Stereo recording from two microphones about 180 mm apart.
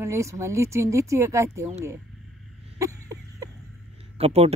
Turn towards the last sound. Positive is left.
turn(degrees=-35)  # may be behind; listen again after turning